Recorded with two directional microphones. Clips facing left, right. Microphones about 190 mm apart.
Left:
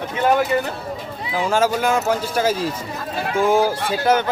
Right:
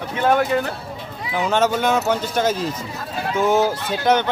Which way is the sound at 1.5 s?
5° left (ahead or behind).